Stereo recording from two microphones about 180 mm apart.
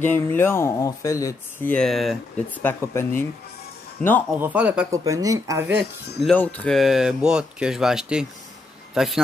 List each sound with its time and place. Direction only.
0.0 s speech: 10° left (ahead or behind)
2.6 s speech: 10° left (ahead or behind)
4.4 s speech: 10° right (ahead or behind)
5.0 s speech: 20° right (ahead or behind)
6.2 s a man's voice: 10° left (ahead or behind)